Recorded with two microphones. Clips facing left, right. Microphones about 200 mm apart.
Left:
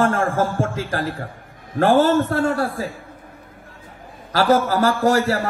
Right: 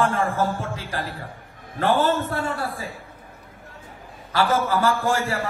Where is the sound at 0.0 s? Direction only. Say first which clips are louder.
Left 3 dB; 45° left (ahead or behind).